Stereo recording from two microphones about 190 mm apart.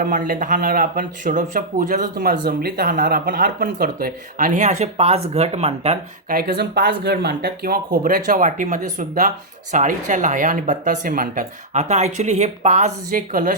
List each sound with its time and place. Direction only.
0.0 s speech: 45° right (ahead or behind)
6.2 s speech: 50° right (ahead or behind)